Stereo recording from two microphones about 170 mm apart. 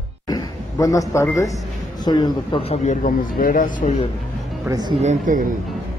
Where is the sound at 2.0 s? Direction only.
25° left (ahead or behind).